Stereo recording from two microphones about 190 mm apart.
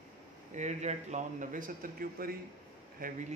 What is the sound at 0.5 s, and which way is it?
Speech, 40° right (ahead or behind).